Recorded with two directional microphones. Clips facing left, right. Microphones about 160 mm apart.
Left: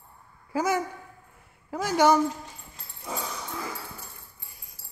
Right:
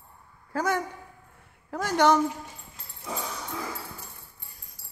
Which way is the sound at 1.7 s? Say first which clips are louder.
Left 1 dB; 5° left (ahead or behind).